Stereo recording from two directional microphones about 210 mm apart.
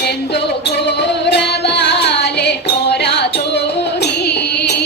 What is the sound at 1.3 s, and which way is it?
Music, 55° left (ahead or behind).